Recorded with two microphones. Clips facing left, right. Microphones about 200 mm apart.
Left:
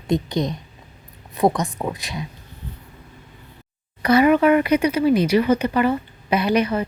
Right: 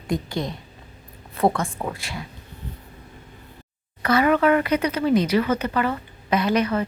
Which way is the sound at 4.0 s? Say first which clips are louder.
Left 4 dB; 15° left (ahead or behind).